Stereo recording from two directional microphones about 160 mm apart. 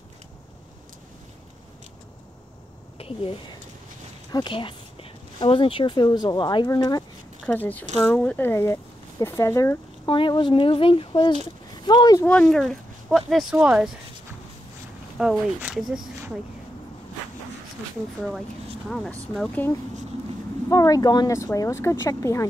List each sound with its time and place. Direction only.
3.0 s speech: 35° left (ahead or behind)
7.4 s speech: 10° left (ahead or behind)
10.0 s speech: 30° left (ahead or behind)
12.3 s speech: 5° left (ahead or behind)
15.1 s speech: 5° right (ahead or behind)
18.9 s speech: 5° left (ahead or behind)
20.7 s speech: 20° left (ahead or behind)